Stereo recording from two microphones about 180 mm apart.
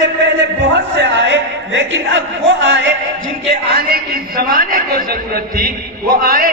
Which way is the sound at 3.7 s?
55° right (ahead or behind).